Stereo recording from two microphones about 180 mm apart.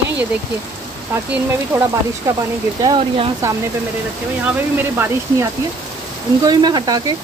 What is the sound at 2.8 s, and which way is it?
Speech, 25° right (ahead or behind).